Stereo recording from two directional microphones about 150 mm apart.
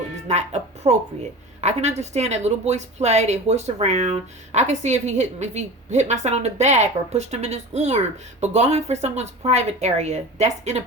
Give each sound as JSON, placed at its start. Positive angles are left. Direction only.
{"t": 0.3, "sound": "music", "side_deg": -50}
{"t": 1.6, "sound": "speech", "side_deg": -50}